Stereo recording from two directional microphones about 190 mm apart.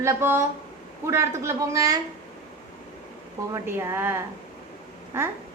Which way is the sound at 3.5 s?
15° right (ahead or behind).